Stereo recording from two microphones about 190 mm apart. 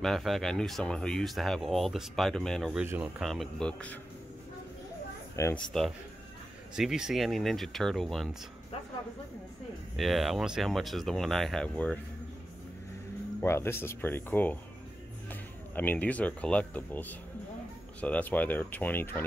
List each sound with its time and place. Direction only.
0.0 s speech: centre (ahead or behind)
2.8 s speech: 10° right (ahead or behind)
3.3 s speech: centre (ahead or behind)
5.3 s speech: 15° left (ahead or behind)
5.7 s speech: centre (ahead or behind)
9.9 s speech: centre (ahead or behind)
13.4 s speech: 10° left (ahead or behind)